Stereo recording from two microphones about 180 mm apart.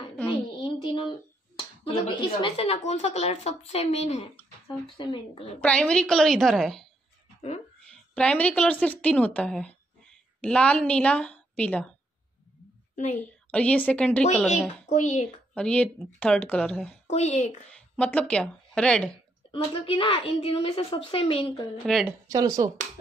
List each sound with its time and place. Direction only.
0.6 s child singing: 25° left (ahead or behind)
1.6 s speech: 30° left (ahead or behind)
4.6 s speech: 25° left (ahead or behind)
5.6 s speech: 5° left (ahead or behind)
8.1 s a woman's voice: 5° left (ahead or behind)
12.9 s a woman's voice: 45° left (ahead or behind)
13.2 s a woman's voice: 5° left (ahead or behind)
14.9 s speech: 40° left (ahead or behind)
15.5 s speech: 5° left (ahead or behind)
17.1 s speech: 40° left (ahead or behind)
17.7 s speech: 5° left (ahead or behind)
19.5 s speech: 30° left (ahead or behind)
21.8 s speech: centre (ahead or behind)
22.3 s speech: 20° right (ahead or behind)